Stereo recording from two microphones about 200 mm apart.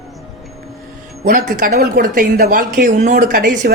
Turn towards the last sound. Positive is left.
turn(degrees=-45)  # may be behind; listen again after turning